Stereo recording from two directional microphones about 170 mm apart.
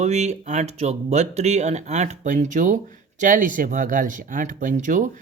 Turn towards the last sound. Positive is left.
turn(degrees=-45)  # may be behind; listen again after turning